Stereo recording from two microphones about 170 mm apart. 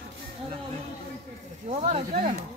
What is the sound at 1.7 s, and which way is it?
Speech, 40° right (ahead or behind).